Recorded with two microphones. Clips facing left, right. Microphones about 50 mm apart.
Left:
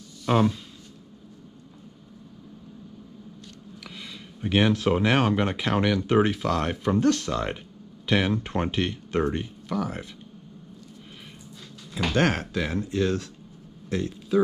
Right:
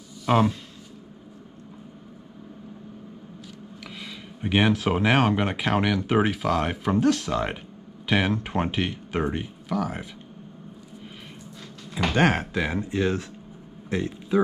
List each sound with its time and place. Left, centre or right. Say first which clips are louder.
0.2 s speech: right 1 dB; centre
3.8 s a sound: right 2 dB; centre
4.4 s speech: even; centre
11.9 s speech: right 2 dB; centre